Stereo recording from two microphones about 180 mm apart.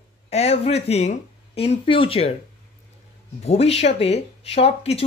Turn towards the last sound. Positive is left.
turn(degrees=35)  # may be behind; listen again after turning